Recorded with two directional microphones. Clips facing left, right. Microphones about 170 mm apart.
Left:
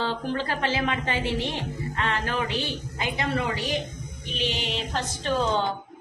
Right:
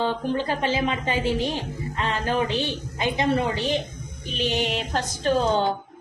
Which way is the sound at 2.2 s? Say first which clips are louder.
Right 4 dB; 25° right (ahead or behind).